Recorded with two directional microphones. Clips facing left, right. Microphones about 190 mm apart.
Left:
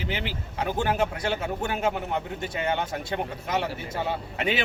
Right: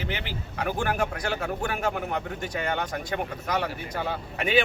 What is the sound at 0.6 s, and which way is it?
Speech, 25° left (ahead or behind).